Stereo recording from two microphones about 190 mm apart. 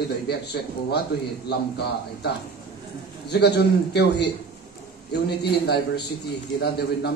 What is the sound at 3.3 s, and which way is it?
A man's voice, 60° left (ahead or behind).